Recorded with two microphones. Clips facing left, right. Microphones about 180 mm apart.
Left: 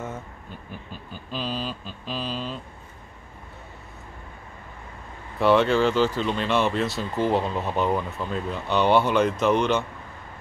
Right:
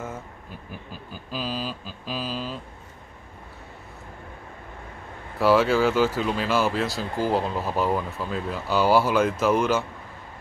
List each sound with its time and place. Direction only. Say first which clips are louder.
0.7 s mantra: even; 5° right (ahead or behind)
5.4 s speech: even; 5° right (ahead or behind)